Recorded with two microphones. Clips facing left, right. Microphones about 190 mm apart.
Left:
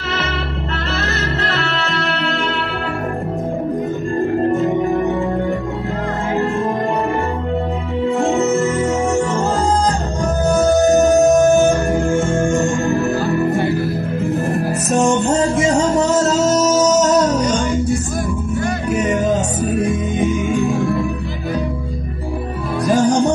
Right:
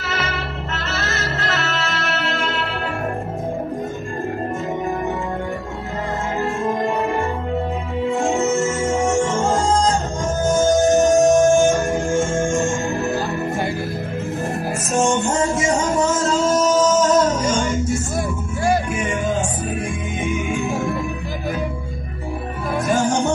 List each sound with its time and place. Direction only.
1.5 s music: 35° left (ahead or behind)
8.2 s music: 35° left (ahead or behind)
10.8 s music: 40° left (ahead or behind)
12.2 s music: 60° left (ahead or behind)
16.3 s music: 40° left (ahead or behind)
22.8 s music: 35° left (ahead or behind)